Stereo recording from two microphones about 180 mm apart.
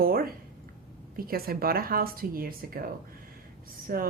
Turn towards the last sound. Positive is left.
turn(degrees=-55)  # may be behind; listen again after turning